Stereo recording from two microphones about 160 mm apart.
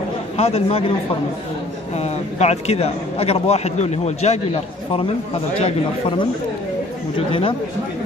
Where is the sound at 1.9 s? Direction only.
40° left (ahead or behind).